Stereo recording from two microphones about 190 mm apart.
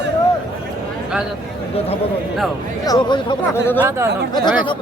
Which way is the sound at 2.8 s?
20° left (ahead or behind).